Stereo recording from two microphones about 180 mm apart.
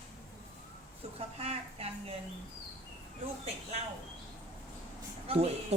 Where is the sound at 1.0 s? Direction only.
35° right (ahead or behind).